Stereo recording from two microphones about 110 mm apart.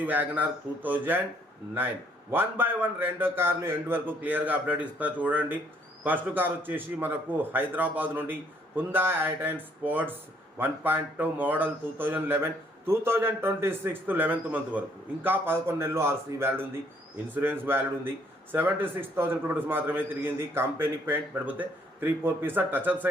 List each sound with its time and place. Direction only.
0.0 s a man's voice: 15° right (ahead or behind)
2.3 s a man's voice: 20° right (ahead or behind)